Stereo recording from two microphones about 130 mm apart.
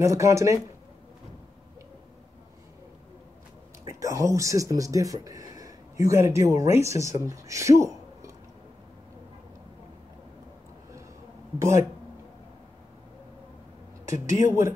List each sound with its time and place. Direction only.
0.0 s speech: 25° right (ahead or behind)
3.8 s speech: 25° right (ahead or behind)
11.5 s speech: 25° right (ahead or behind)
14.0 s speech: 20° right (ahead or behind)